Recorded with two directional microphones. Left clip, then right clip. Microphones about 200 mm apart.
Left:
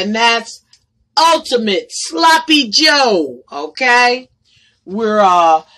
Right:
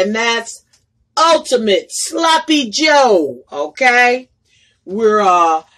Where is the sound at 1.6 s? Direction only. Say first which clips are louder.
Right 2 dB; 30° left (ahead or behind).